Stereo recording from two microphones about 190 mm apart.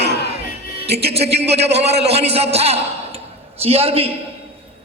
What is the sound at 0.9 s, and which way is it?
A man's voice, 30° right (ahead or behind).